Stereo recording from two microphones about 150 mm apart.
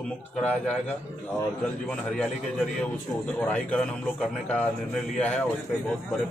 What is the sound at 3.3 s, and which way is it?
A man's voice, 10° left (ahead or behind).